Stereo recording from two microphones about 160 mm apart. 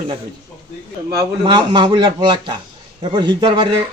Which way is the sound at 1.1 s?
30° right (ahead or behind).